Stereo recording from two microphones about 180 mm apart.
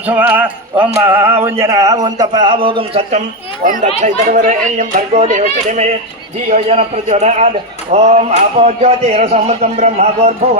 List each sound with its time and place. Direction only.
0.0 s speech: 10° right (ahead or behind); by 3.2 s 30° right (ahead or behind)
3.6 s a man's voice: 45° right (ahead or behind)